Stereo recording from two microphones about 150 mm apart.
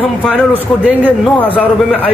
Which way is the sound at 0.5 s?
10° right (ahead or behind).